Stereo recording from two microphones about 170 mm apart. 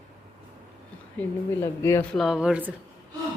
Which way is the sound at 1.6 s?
15° left (ahead or behind).